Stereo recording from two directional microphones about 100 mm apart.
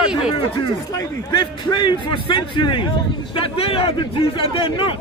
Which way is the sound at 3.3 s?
65° left (ahead or behind).